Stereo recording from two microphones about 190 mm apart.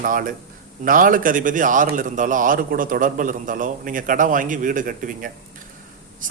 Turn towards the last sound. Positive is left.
turn(degrees=-45)  # may be behind; listen again after turning